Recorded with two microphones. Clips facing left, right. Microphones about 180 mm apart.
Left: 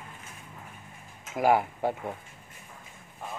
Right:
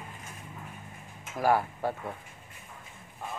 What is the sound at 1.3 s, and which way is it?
Speech, 20° left (ahead or behind).